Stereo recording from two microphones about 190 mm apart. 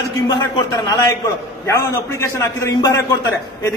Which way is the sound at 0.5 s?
20° left (ahead or behind).